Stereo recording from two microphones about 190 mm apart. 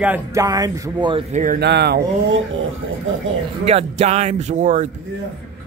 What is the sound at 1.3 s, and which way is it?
Speech, 40° right (ahead or behind).